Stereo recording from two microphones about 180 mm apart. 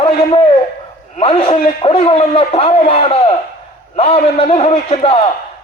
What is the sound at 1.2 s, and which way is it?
A man's voice, 30° left (ahead or behind).